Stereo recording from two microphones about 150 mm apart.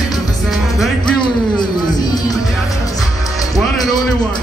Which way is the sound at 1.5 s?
25° left (ahead or behind).